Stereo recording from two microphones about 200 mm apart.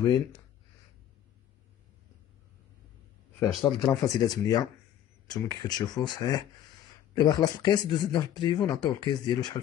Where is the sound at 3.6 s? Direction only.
15° left (ahead or behind).